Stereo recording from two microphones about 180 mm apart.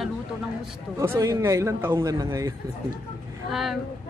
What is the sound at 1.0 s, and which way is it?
A man's voice, 15° right (ahead or behind).